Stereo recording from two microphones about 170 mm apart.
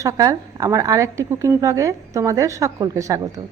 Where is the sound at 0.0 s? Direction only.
20° right (ahead or behind).